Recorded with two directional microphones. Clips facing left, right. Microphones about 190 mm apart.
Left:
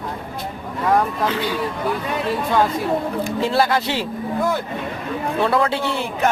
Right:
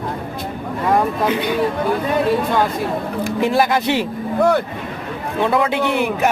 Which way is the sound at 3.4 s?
15° right (ahead or behind).